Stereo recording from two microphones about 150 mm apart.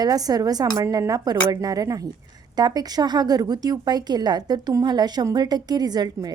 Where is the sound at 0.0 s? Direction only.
25° right (ahead or behind).